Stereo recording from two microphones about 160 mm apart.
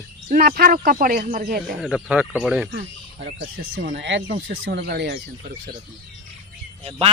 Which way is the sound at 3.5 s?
85° right.